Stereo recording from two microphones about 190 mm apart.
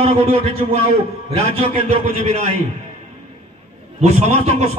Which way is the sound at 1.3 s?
30° right (ahead or behind).